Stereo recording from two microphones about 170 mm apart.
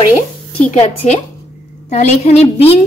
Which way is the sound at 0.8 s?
40° left (ahead or behind).